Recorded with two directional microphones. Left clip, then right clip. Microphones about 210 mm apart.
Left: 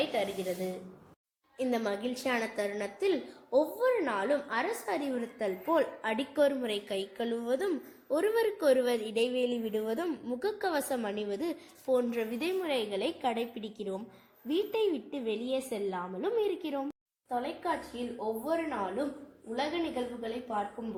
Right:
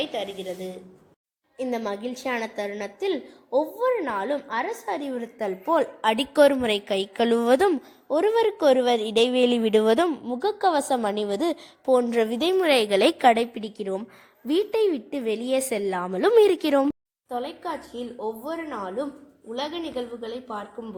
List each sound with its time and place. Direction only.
0.0 s a woman's voice: 25° right (ahead or behind)
1.5 s a woman's voice: 10° right (ahead or behind); by 12.5 s 30° right (ahead or behind)
12.6 s a woman's voice: 50° right (ahead or behind)
17.2 s a woman's voice: 30° right (ahead or behind)
19.5 s a woman's voice: 35° right (ahead or behind)